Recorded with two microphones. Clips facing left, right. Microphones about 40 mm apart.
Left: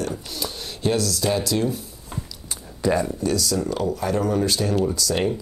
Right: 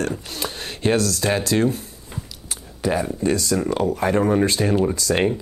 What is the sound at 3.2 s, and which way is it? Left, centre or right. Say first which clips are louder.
Speech: right 2 dB; right.